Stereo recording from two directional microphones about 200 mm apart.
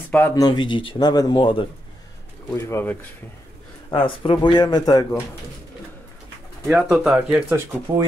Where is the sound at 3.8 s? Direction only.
25° left (ahead or behind).